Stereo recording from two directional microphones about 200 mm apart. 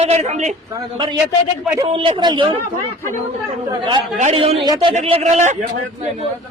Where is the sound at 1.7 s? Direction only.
25° right (ahead or behind).